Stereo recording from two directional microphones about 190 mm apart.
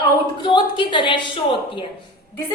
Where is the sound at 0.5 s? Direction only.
25° left (ahead or behind).